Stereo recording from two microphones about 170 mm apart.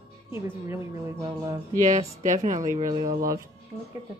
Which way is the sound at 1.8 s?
45° right (ahead or behind).